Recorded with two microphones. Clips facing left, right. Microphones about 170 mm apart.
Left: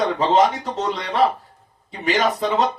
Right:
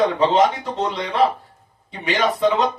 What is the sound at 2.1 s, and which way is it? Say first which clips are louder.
Speech: right 1 dB; 45° left (ahead or behind).